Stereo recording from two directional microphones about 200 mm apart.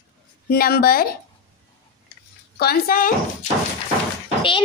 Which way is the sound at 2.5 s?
50° left (ahead or behind).